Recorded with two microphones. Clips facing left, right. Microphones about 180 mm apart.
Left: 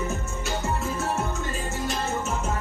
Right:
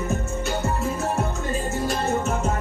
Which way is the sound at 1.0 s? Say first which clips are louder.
Right 2 dB; 35° right (ahead or behind).